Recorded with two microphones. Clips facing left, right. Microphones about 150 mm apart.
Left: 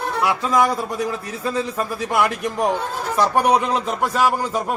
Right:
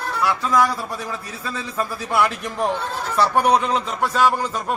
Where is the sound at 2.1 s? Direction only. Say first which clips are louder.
Left 1 dB; 15° left (ahead or behind).